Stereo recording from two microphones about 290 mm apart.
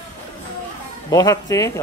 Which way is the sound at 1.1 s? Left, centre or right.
Centre.